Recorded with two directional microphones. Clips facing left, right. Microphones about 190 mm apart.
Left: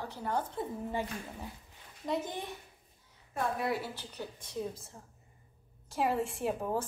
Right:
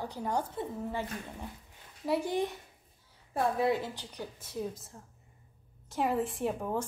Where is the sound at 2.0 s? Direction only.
10° right (ahead or behind).